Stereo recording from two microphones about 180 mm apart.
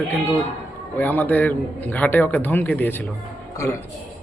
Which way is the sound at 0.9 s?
10° left (ahead or behind).